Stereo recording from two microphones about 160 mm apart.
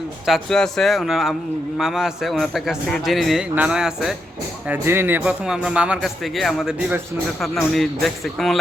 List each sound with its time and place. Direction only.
0.3 s speech: centre (ahead or behind)